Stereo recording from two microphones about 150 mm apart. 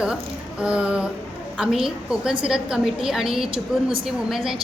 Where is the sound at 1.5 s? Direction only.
5° right (ahead or behind).